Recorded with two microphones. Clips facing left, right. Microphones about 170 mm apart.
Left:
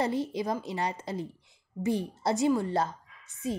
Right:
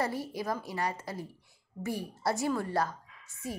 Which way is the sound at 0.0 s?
20° left (ahead or behind).